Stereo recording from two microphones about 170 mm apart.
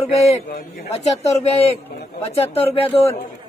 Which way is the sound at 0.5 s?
70° left (ahead or behind).